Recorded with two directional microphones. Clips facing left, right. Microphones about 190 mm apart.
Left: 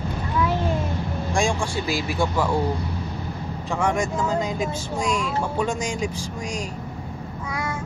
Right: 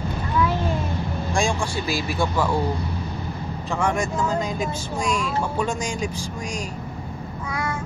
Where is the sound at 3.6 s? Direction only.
15° left (ahead or behind).